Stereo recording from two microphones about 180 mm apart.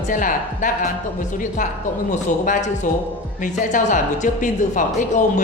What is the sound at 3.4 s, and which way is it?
Speech, 45° left (ahead or behind).